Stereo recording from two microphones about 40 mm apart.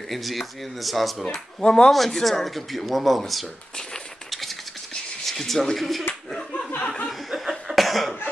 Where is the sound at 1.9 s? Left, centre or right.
Centre.